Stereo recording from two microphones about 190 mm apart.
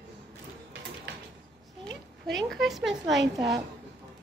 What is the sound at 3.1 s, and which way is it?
Speech, 65° right (ahead or behind).